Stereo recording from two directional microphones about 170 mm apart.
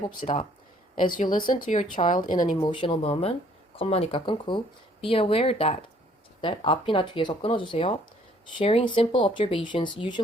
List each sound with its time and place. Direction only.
1.1 s speech: 55° left (ahead or behind)
2.6 s speech: 30° left (ahead or behind)